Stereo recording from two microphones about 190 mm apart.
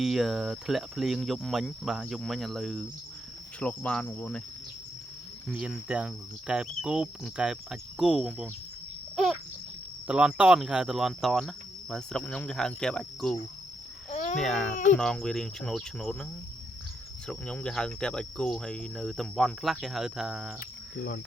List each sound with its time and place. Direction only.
0.0 s speech: centre (ahead or behind)
3.6 s cricket: 5° left (ahead or behind)
5.5 s speech: 5° right (ahead or behind)
9.1 s cricket: centre (ahead or behind)
10.1 s speech: 5° right (ahead or behind)
14.1 s babbling: 40° left (ahead or behind)
14.3 s speech: centre (ahead or behind)
17.2 s speech: 5° left (ahead or behind)